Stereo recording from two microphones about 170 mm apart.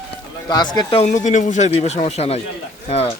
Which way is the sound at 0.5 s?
25° left (ahead or behind).